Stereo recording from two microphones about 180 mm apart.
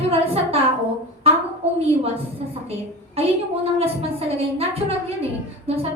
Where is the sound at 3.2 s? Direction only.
35° right (ahead or behind).